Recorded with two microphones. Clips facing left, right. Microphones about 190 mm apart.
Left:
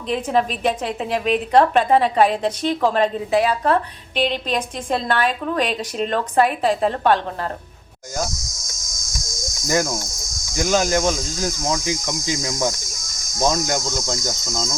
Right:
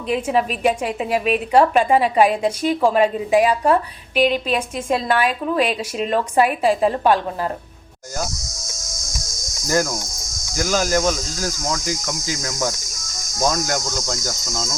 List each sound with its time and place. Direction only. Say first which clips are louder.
0.1 s a woman's voice: even; 10° right (ahead or behind)
10.6 s speech: left 1 dB; 20° left (ahead or behind)
12.5 s cricket: left 1 dB; 10° left (ahead or behind)
13.5 s speech: left 1 dB; 20° left (ahead or behind)
14.1 s cricket: left 1 dB; 15° left (ahead or behind)